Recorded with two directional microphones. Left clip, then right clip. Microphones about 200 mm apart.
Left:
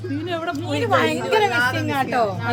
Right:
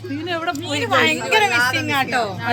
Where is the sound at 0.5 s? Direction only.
30° left (ahead or behind).